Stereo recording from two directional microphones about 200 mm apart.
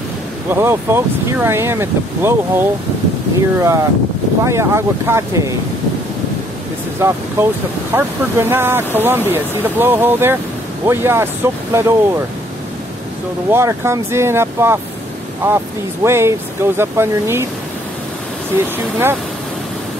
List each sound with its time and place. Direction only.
0.5 s speech: 10° right (ahead or behind)
7.0 s speech: 10° right (ahead or behind)
13.5 s speech: 15° right (ahead or behind)